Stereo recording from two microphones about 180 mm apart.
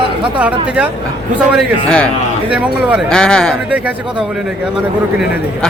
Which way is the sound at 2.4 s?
5° right (ahead or behind).